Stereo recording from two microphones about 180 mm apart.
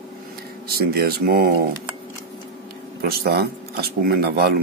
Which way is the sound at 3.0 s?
60° right (ahead or behind).